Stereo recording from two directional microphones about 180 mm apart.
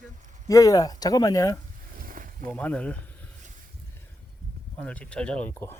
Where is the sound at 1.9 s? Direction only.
50° right (ahead or behind).